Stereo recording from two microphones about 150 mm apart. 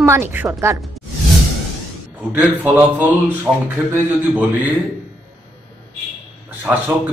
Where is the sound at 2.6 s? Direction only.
10° right (ahead or behind).